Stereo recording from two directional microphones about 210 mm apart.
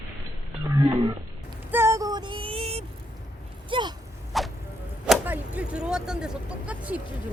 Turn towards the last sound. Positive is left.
turn(degrees=-5)  # may be behind; listen again after turning